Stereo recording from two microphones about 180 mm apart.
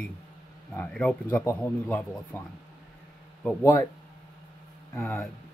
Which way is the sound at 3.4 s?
10° left (ahead or behind).